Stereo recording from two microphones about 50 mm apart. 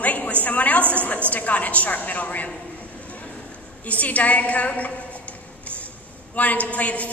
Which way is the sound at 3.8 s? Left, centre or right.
Left.